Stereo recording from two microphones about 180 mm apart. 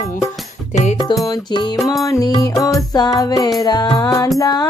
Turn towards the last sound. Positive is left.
turn(degrees=20)  # may be behind; listen again after turning